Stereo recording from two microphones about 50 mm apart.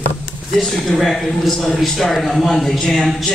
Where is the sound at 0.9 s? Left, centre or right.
Centre.